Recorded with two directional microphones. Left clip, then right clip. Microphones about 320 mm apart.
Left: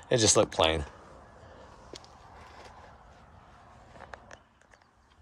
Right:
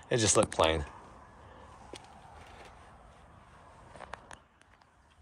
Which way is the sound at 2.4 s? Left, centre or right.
Centre.